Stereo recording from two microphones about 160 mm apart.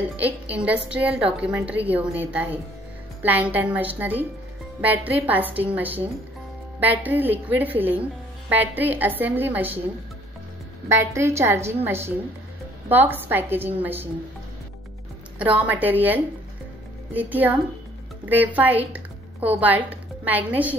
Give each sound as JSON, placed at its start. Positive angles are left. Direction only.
{"t": 0.2, "sound": "a woman's voice", "side_deg": -10}
{"t": 10.9, "sound": "a woman's voice", "side_deg": -15}
{"t": 15.3, "sound": "a woman's voice", "side_deg": -10}